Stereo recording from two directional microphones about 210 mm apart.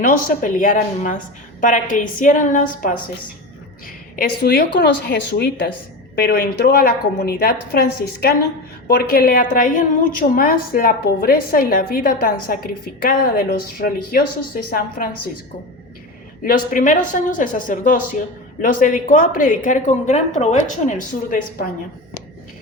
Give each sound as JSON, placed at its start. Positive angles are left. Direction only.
{"t": 0.0, "sound": "a woman's voice", "side_deg": 40}
{"t": 16.4, "sound": "a woman's voice", "side_deg": 40}